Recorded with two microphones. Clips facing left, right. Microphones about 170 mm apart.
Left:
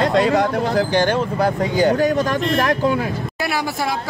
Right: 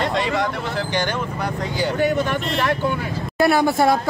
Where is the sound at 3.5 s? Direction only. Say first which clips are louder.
Right 4 dB; 55° right (ahead or behind).